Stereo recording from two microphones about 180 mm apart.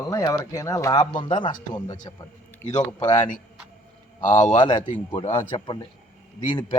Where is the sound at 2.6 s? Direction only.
10° left (ahead or behind).